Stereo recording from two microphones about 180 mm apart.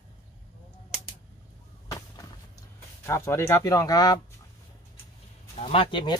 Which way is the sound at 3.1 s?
15° left (ahead or behind).